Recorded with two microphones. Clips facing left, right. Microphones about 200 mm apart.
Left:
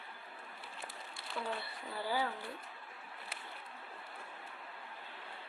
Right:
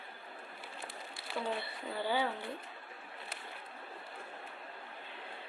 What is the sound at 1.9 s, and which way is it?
Speech, 25° right (ahead or behind).